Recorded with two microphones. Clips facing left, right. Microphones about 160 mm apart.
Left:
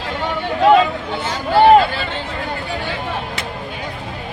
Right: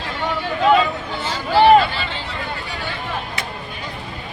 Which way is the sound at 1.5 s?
50° left (ahead or behind).